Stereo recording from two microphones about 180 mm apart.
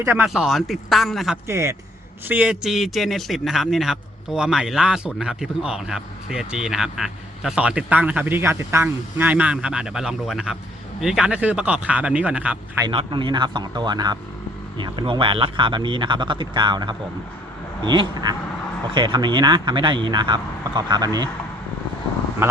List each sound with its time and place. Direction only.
0.0 s a man's voice: 10° right (ahead or behind)
1.5 s a man's voice: 15° right (ahead or behind)
12.8 s speech: 30° right (ahead or behind)